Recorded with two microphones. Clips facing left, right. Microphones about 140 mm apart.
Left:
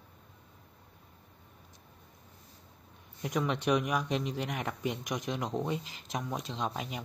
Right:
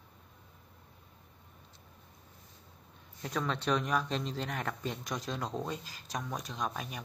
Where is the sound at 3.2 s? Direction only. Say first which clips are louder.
Left 3 dB; 15° left (ahead or behind).